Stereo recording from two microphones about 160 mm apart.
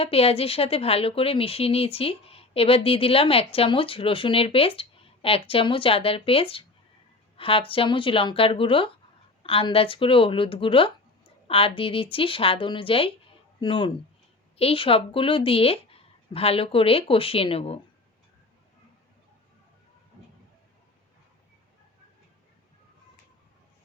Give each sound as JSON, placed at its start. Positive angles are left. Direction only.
{"t": 0.0, "sound": "speech", "side_deg": 35}